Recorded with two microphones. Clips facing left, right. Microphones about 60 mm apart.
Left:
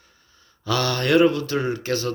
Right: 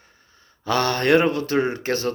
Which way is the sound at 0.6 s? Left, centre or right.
Right.